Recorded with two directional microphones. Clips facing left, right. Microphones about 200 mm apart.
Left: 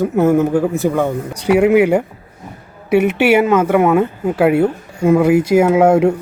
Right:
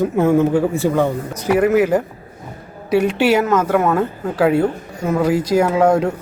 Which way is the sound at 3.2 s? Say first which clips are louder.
Left 3 dB; 10° left (ahead or behind).